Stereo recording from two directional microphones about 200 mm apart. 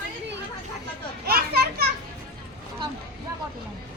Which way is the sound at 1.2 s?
50° right (ahead or behind).